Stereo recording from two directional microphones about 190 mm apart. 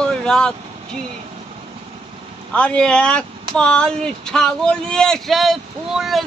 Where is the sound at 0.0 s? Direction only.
5° left (ahead or behind).